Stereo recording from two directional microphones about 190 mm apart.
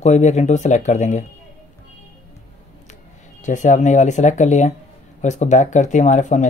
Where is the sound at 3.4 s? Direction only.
40° left (ahead or behind).